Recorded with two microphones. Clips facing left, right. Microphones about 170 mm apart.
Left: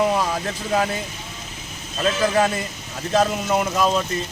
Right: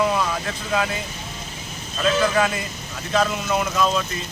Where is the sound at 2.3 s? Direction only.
35° left (ahead or behind).